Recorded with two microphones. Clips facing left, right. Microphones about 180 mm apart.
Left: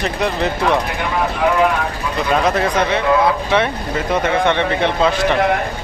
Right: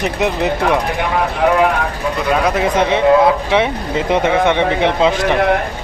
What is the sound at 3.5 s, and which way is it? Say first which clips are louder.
Speech: right 2 dB; 20° right (ahead or behind).